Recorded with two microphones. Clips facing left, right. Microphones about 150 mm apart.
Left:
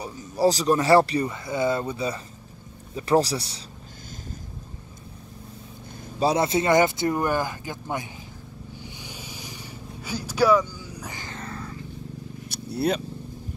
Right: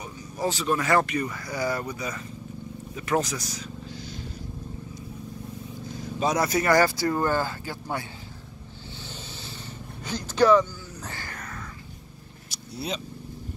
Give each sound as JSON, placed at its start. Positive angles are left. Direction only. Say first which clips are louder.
{"t": 0.0, "sound": "speech", "louder": "left 7 dB", "side_deg": 35}
{"t": 6.1, "sound": "speech", "louder": "left 3 dB", "side_deg": 30}
{"t": 10.0, "sound": "a sound", "louder": "right 1 dB", "side_deg": 10}
{"t": 12.4, "sound": "vehicle", "louder": "left 8 dB", "side_deg": 60}